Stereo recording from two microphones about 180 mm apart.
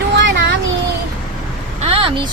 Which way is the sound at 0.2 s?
80° right.